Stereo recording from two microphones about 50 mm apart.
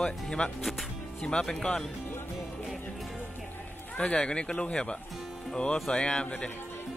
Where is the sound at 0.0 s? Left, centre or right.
Centre.